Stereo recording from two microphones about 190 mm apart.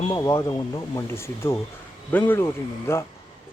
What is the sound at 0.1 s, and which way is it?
Speech, 15° left (ahead or behind).